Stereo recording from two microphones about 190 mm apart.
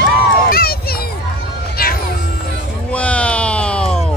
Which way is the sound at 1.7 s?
50° left (ahead or behind).